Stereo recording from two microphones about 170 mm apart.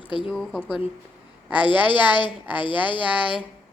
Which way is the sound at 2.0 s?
25° left (ahead or behind).